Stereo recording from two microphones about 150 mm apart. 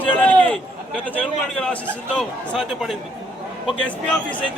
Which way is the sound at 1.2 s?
5° left (ahead or behind).